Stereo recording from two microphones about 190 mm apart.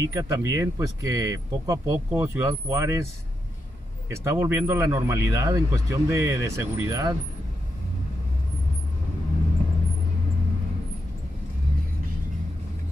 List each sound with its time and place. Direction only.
0.0 s speech: 15° right (ahead or behind)
4.1 s speech: 15° right (ahead or behind)